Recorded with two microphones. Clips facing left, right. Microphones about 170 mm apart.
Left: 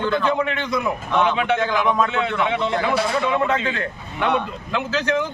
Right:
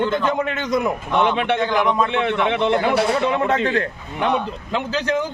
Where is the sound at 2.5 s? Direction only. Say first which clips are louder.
Right 3 dB; 65° right (ahead or behind).